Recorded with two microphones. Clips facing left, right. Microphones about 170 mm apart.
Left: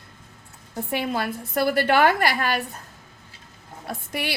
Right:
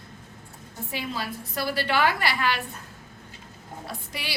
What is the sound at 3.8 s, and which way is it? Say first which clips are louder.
Speech: left 8 dB; 55° left (ahead or behind).